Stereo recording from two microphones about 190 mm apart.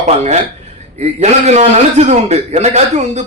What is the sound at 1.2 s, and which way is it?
A man's voice, 35° right (ahead or behind).